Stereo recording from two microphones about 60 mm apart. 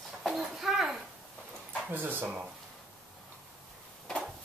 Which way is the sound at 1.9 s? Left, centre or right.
Right.